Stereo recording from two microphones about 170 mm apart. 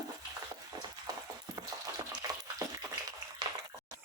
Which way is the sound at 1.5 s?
20° right (ahead or behind).